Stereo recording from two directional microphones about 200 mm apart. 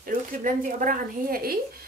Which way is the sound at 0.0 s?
45° right (ahead or behind).